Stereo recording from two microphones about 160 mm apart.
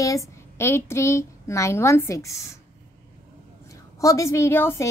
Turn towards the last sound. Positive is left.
turn(degrees=15)  # may be behind; listen again after turning